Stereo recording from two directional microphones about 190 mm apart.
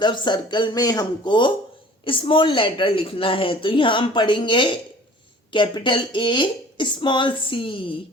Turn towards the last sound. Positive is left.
turn(degrees=25)  # may be behind; listen again after turning